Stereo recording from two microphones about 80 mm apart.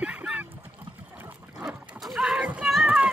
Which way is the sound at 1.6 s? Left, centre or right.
Centre.